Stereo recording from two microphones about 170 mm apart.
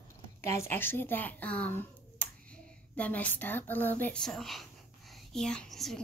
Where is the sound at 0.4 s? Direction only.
15° left (ahead or behind).